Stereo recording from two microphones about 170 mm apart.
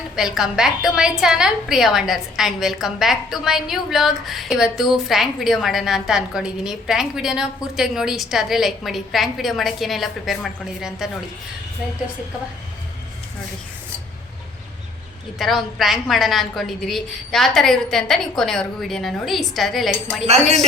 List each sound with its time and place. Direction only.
0.2 s a woman's voice: 5° right (ahead or behind)
15.4 s a woman's voice: centre (ahead or behind)